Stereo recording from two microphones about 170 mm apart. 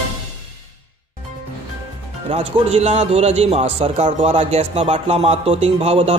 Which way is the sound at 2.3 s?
40° right (ahead or behind).